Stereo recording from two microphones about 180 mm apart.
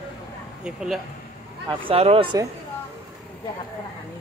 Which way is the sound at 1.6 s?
30° right (ahead or behind).